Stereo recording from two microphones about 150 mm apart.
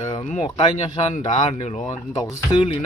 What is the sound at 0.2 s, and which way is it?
Speech, 45° left (ahead or behind).